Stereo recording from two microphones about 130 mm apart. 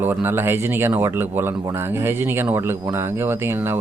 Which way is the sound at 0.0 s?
15° right (ahead or behind).